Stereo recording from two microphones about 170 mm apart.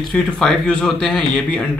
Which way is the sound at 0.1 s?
5° left (ahead or behind).